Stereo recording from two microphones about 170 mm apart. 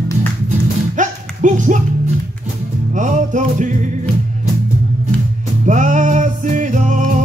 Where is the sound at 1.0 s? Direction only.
45° right (ahead or behind).